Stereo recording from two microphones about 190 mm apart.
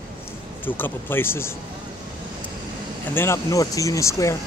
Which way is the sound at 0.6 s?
10° left (ahead or behind).